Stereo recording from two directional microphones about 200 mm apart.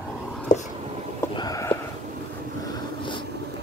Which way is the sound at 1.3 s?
20° left (ahead or behind).